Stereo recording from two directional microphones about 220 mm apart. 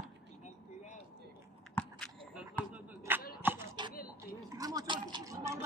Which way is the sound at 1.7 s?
5° left (ahead or behind).